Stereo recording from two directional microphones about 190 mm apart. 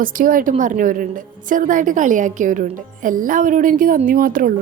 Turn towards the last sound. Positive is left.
turn(degrees=-50)  # may be behind; listen again after turning